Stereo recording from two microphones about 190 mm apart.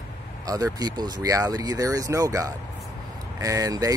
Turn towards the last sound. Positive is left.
turn(degrees=-20)  # may be behind; listen again after turning